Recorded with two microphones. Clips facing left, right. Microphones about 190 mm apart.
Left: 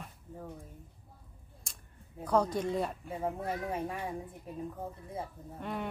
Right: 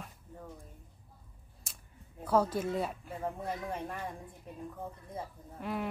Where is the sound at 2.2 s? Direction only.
5° right (ahead or behind).